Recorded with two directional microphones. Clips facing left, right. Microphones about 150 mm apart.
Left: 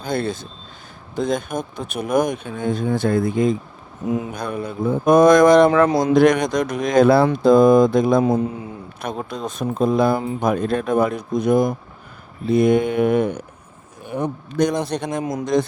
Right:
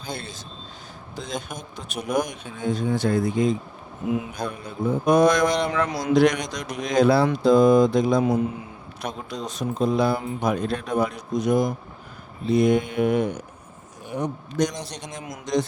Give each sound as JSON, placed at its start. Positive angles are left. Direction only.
{"t": 0.0, "sound": "speech", "side_deg": 55}
{"t": 5.9, "sound": "speech", "side_deg": 25}
{"t": 6.1, "sound": "speech", "side_deg": 50}
{"t": 8.2, "sound": "a man's voice", "side_deg": 30}
{"t": 9.0, "sound": "speech", "side_deg": 55}